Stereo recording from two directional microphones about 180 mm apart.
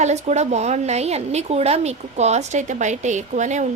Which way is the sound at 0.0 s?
40° right (ahead or behind).